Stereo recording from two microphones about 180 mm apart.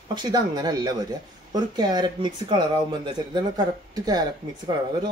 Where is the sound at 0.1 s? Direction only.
25° right (ahead or behind).